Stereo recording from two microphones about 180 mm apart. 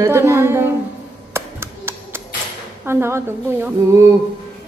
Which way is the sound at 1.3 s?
15° right (ahead or behind).